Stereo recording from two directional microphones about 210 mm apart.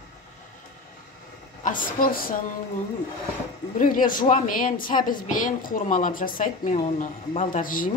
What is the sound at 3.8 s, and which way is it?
Speech, 40° left (ahead or behind).